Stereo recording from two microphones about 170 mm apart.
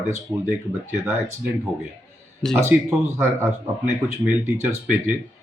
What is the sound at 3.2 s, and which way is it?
Speech, 15° right (ahead or behind).